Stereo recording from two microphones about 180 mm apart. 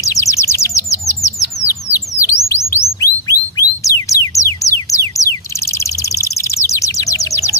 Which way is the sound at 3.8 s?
15° left (ahead or behind).